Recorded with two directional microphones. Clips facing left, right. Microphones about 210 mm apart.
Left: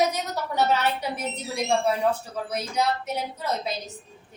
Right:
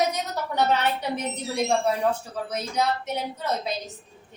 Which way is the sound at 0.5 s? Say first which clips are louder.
Even; 5° left (ahead or behind).